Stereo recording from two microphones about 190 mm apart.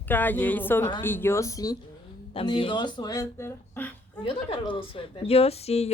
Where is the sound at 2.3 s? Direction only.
30° left (ahead or behind); by 3.9 s 10° left (ahead or behind).